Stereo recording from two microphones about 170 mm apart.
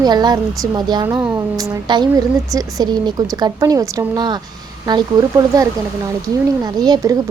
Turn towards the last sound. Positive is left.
turn(degrees=-25)  # may be behind; listen again after turning